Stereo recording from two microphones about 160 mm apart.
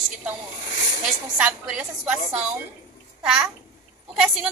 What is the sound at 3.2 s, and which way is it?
Speech, 5° right (ahead or behind).